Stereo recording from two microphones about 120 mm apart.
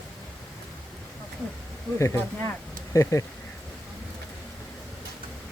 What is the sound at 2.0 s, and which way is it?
Speech, 25° left (ahead or behind).